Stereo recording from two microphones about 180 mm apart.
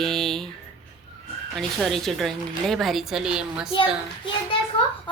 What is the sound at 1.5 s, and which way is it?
A woman's voice, centre (ahead or behind).